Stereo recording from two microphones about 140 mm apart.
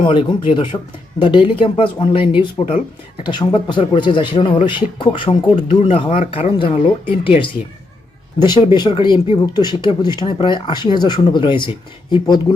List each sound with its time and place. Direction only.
0.0 s speech: 35° left (ahead or behind)
8.4 s speech: 30° left (ahead or behind)